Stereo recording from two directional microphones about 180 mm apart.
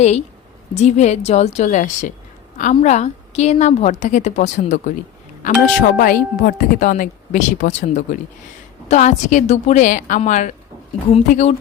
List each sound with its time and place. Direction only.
0.0 s a woman's voice: 40° left (ahead or behind)
5.4 s a woman's voice: 50° left (ahead or behind)